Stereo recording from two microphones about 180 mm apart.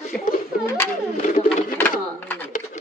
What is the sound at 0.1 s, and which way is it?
Speech, 5° left (ahead or behind).